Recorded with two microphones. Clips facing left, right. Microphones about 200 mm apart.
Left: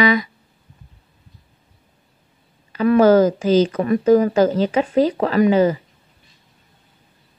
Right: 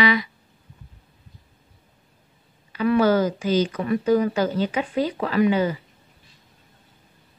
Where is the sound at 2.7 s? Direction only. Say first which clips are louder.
Left 6 dB; 45° left (ahead or behind).